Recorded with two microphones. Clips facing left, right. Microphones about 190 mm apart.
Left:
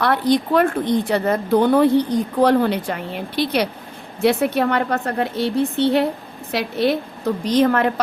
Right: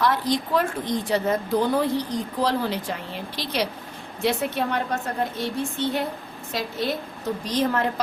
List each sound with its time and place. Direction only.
0.0 s a woman's voice: 65° left (ahead or behind)